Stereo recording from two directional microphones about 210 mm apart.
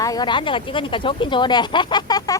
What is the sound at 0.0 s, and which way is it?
A woman's voice, 20° left (ahead or behind).